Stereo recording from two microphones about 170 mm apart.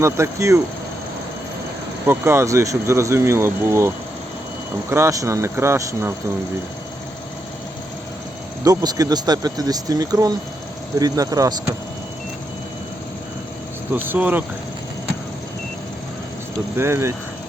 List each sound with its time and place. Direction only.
0.0 s speech: 15° right (ahead or behind)
2.0 s speech: 15° right (ahead or behind)
8.6 s speech: 20° right (ahead or behind)
13.9 s speech: 10° right (ahead or behind)
16.7 s speech: 15° right (ahead or behind)